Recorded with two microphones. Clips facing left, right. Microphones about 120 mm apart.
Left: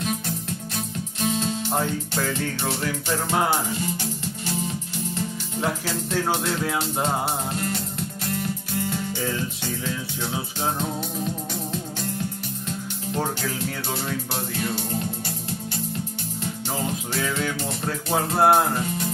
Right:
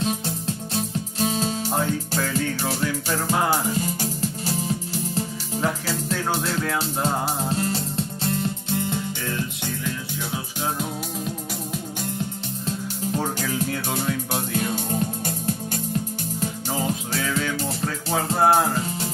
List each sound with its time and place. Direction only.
0.7 s music: 35° right (ahead or behind)
1.7 s music: centre (ahead or behind)
3.4 s music: 40° right (ahead or behind)
5.6 s music: centre (ahead or behind)
7.4 s music: 35° right (ahead or behind)
16.7 s music: centre (ahead or behind)